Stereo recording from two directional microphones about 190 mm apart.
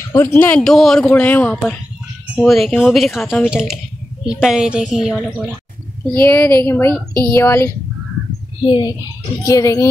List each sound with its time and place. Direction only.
0.1 s a man's voice: 10° left (ahead or behind); by 5.6 s 5° right (ahead or behind)
6.1 s speech: 10° left (ahead or behind)
8.6 s a child's voice: 25° left (ahead or behind)